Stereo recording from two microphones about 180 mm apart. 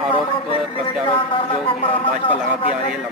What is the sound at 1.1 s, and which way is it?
A man's voice, 30° left (ahead or behind).